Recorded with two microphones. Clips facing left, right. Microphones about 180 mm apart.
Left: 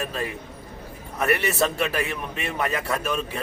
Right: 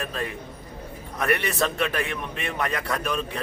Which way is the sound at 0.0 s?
5° left (ahead or behind).